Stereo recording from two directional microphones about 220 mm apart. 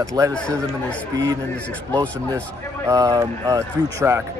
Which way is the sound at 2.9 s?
15° right (ahead or behind).